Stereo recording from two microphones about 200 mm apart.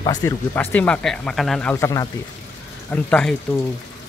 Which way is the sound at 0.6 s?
10° left (ahead or behind).